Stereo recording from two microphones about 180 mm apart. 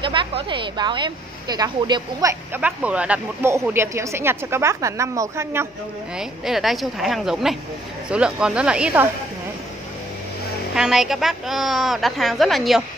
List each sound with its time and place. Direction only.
0.0 s speech: 25° right (ahead or behind)
2.6 s speech: 5° right (ahead or behind)
6.1 s a woman's voice: centre (ahead or behind)
10.7 s a woman's voice: centre (ahead or behind)